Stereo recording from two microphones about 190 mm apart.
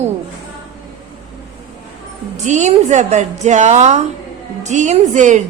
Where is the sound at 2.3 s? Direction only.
40° right (ahead or behind).